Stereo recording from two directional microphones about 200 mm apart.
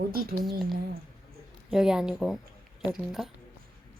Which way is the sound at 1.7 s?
5° right (ahead or behind).